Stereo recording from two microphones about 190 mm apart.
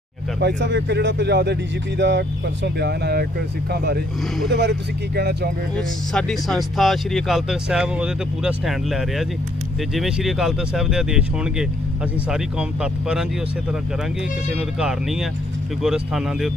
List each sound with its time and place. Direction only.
0.4 s speech: 65° right (ahead or behind)
5.8 s speech: 5° left (ahead or behind)
14.8 s speech: 5° right (ahead or behind)